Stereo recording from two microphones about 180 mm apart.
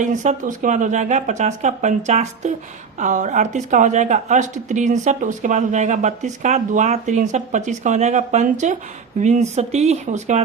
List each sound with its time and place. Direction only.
0.0 s speech: 45° right (ahead or behind)